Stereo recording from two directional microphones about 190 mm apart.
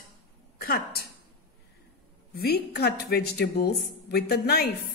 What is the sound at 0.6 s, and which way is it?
Speech, 55° left (ahead or behind).